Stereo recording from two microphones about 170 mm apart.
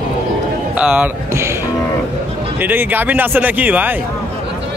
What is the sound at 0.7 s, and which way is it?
Speech, 10° right (ahead or behind).